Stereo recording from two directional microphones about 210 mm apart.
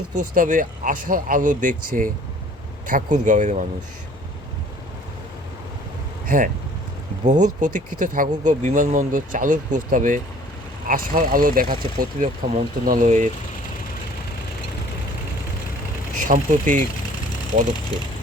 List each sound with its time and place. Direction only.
0.1 s speech: 40° right (ahead or behind)
6.2 s speech: 40° right (ahead or behind)
16.1 s speech: 40° right (ahead or behind)